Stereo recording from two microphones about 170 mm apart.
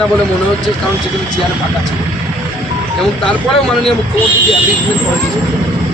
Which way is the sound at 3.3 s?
Centre (ahead or behind).